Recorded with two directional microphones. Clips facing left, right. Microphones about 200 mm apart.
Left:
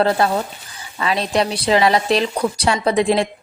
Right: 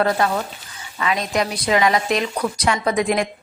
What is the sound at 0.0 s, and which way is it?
A woman's voice, 30° left (ahead or behind).